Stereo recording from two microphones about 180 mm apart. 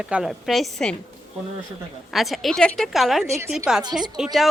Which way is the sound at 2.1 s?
Centre (ahead or behind).